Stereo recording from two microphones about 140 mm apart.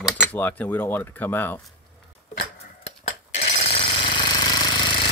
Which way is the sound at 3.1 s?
45° left (ahead or behind).